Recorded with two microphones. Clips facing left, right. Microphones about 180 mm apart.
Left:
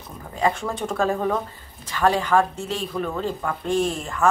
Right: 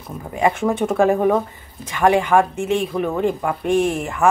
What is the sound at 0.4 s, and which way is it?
Speech, 20° right (ahead or behind).